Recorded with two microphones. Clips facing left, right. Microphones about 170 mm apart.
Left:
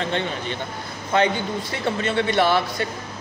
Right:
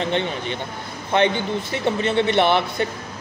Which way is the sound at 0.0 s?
20° right (ahead or behind).